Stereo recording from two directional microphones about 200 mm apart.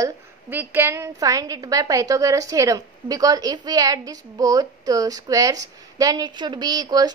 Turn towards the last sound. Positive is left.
turn(degrees=-20)  # may be behind; listen again after turning